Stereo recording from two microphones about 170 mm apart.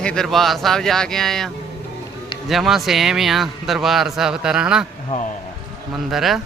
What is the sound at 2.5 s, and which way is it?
A man's voice, centre (ahead or behind).